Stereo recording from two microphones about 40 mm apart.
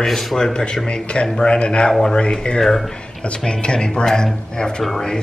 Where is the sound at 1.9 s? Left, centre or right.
Centre.